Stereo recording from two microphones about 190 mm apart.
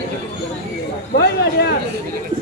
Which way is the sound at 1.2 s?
60° left (ahead or behind).